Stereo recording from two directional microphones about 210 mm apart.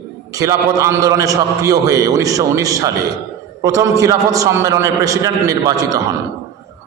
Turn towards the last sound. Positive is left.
turn(degrees=-15)  # may be behind; listen again after turning